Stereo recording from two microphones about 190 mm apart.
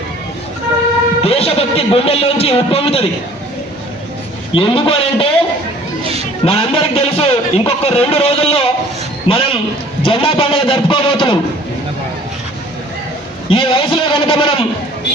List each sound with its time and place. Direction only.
1.2 s a man's voice: 30° left (ahead or behind)
4.5 s a man's voice: 30° left (ahead or behind)
6.4 s a man's voice: 30° left (ahead or behind)
13.5 s a man's voice: 30° left (ahead or behind)